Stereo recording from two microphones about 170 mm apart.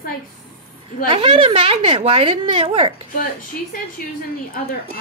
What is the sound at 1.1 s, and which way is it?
A woman's voice, 30° right (ahead or behind).